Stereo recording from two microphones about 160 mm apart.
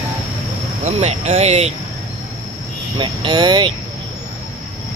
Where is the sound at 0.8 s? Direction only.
40° right (ahead or behind).